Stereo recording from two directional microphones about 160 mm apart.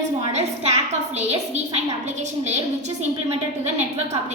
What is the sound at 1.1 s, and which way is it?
A woman's voice, 45° right (ahead or behind).